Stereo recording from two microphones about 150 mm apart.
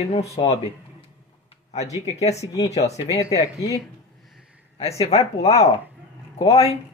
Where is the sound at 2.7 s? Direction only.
45° left (ahead or behind).